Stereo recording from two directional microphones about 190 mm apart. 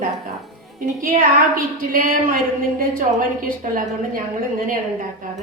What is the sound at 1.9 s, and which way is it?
Speech, 50° right (ahead or behind).